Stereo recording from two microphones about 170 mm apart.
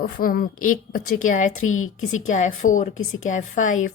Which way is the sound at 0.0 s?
55° left (ahead or behind).